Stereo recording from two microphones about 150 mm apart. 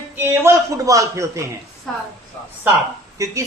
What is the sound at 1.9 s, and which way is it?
Speech, 5° left (ahead or behind).